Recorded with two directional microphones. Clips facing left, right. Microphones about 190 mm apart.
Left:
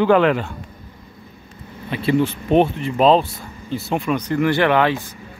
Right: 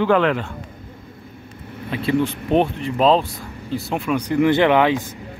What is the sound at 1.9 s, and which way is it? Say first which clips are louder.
Speech: left 2 dB; centre (ahead or behind).